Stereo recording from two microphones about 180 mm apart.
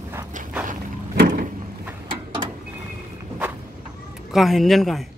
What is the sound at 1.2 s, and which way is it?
Vehicle, 50° right (ahead or behind).